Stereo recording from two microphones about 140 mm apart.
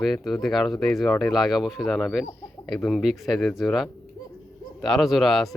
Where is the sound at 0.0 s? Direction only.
Centre (ahead or behind).